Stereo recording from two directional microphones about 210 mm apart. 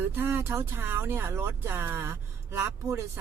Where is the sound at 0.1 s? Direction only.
10° right (ahead or behind).